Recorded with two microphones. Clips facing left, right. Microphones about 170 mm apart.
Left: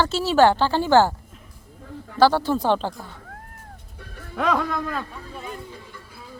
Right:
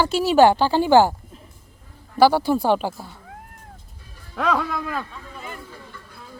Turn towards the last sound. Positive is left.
turn(degrees=5)  # may be behind; listen again after turning